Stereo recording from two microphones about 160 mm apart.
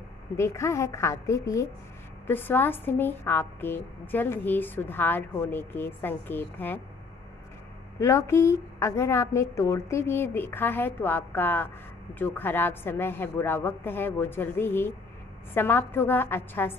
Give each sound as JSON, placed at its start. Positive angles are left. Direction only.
{"t": 0.4, "sound": "a woman's voice", "side_deg": 15}
{"t": 8.0, "sound": "a woman's voice", "side_deg": 15}